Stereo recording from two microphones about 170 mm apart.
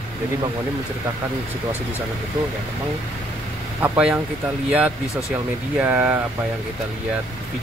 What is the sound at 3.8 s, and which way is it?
Speech, 5° right (ahead or behind).